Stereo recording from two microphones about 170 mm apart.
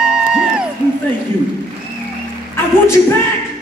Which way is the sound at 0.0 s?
5° right (ahead or behind).